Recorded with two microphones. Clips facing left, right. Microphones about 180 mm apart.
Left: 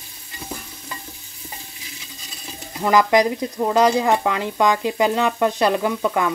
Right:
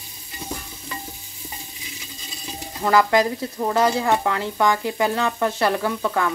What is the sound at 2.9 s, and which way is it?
Stir, 15° left (ahead or behind).